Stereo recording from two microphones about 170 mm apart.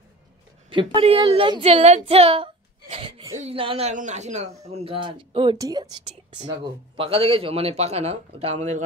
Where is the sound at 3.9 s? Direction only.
45° right (ahead or behind).